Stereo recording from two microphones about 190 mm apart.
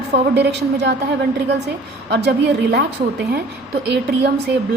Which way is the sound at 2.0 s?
60° right (ahead or behind).